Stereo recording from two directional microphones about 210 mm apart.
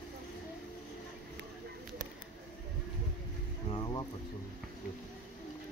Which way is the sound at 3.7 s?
20° left (ahead or behind).